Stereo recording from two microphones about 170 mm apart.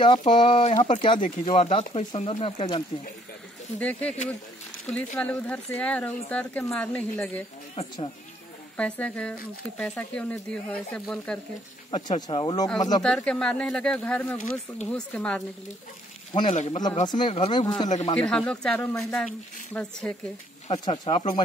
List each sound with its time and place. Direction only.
0.0 s speech: 25° left (ahead or behind)
0.7 s speech: 45° left (ahead or behind)
4.9 s speech: 5° left (ahead or behind)
8.7 s speech: 5° left (ahead or behind)
12.2 s speech: 30° left (ahead or behind)
13.0 s speech: 5° left (ahead or behind)
16.3 s speech: 35° left (ahead or behind)
17.8 s speech: 40° left (ahead or behind)
18.1 s speech: 5° left (ahead or behind)
20.8 s speech: 30° left (ahead or behind)